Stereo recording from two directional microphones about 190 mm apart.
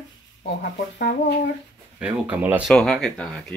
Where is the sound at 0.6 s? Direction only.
60° left (ahead or behind).